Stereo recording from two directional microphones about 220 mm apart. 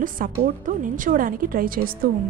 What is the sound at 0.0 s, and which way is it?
Speech, 40° right (ahead or behind).